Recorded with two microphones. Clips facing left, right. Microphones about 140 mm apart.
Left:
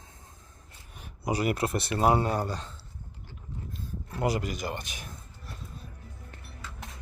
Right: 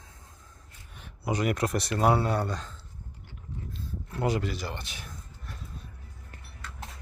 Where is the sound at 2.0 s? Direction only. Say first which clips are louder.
Even; 10° left (ahead or behind).